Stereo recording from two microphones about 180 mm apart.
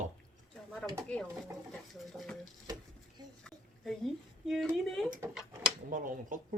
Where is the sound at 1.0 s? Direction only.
5° left (ahead or behind).